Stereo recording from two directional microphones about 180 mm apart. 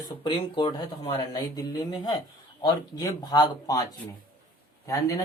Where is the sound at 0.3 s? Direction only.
25° left (ahead or behind).